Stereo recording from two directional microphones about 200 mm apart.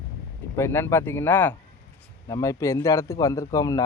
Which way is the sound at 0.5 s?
10° left (ahead or behind).